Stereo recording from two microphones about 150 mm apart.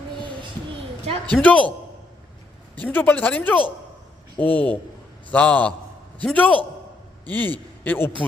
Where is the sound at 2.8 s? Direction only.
10° left (ahead or behind).